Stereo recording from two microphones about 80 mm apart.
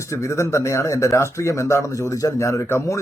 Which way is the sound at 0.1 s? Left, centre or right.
Left.